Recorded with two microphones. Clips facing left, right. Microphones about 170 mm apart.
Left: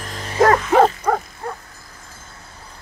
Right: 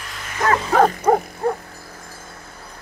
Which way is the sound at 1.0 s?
25° right (ahead or behind).